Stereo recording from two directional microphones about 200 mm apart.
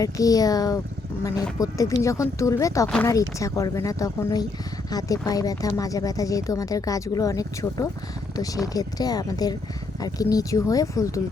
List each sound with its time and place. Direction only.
0.0 s speech: 15° left (ahead or behind)